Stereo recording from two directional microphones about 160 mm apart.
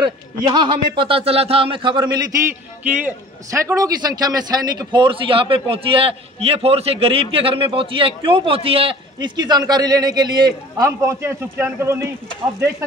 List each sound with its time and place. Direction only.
0.0 s speech: 30° right (ahead or behind)
2.8 s a man's voice: 10° right (ahead or behind)
3.6 s speech: 20° right (ahead or behind)